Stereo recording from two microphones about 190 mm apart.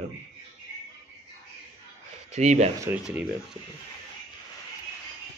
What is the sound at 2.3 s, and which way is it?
Speech, 35° right (ahead or behind).